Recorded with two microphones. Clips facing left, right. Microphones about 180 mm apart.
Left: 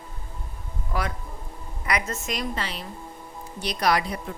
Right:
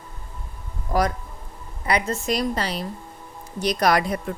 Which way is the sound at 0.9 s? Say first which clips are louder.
Right 8 dB; 40° right (ahead or behind).